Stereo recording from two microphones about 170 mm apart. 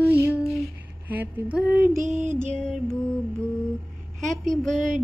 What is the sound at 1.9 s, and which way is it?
Music, 45° right (ahead or behind).